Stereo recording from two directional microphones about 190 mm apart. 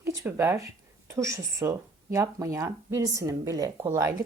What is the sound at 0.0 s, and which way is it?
Speech, 15° right (ahead or behind).